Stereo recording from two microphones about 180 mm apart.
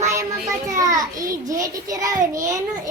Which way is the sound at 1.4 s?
20° right (ahead or behind).